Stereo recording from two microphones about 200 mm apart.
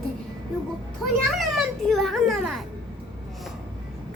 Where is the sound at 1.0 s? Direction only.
Centre (ahead or behind).